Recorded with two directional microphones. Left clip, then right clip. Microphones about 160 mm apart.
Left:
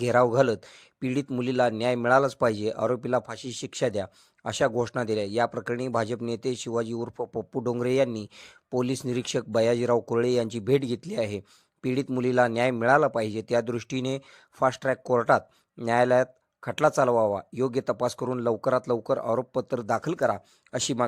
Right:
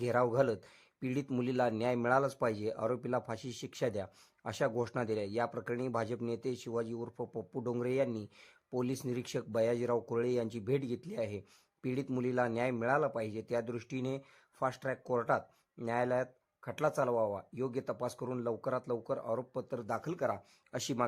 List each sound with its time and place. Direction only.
0.0 s a man's voice: 30° left (ahead or behind)